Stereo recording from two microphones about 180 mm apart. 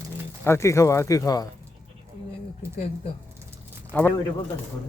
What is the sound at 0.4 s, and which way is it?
Speech, 15° left (ahead or behind).